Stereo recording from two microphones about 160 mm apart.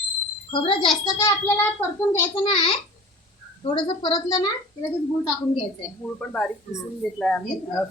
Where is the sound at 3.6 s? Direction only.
30° left (ahead or behind).